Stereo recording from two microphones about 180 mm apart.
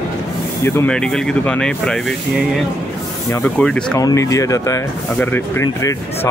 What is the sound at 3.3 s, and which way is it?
Speech, 5° left (ahead or behind).